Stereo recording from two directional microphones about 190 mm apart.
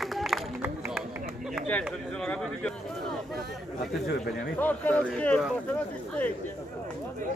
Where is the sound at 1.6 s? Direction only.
5° left (ahead or behind).